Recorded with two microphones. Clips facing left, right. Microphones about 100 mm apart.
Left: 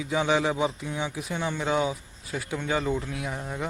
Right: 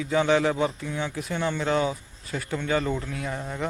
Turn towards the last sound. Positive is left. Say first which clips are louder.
# right 2 dB
turn(degrees=10)  # may be behind; listen again after turning